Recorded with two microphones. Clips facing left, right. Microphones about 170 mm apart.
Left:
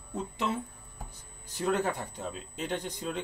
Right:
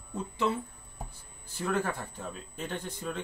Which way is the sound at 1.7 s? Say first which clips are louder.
Left 2 dB; 20° left (ahead or behind).